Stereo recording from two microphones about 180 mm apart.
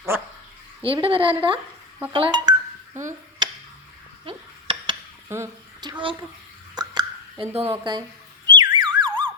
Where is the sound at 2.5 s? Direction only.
25° right (ahead or behind).